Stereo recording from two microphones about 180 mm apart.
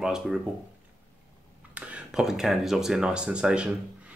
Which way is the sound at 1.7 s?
5° right (ahead or behind).